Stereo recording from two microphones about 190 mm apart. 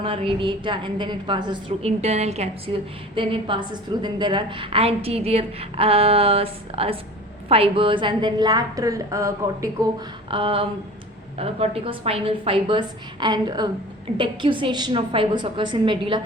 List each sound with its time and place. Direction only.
0.0 s a woman's voice: 30° right (ahead or behind)
10.2 s a woman's voice: 25° right (ahead or behind)